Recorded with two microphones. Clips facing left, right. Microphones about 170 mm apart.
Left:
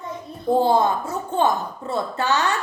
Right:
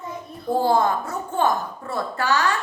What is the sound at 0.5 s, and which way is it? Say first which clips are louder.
A woman's voice: left 1 dB; 20° left (ahead or behind).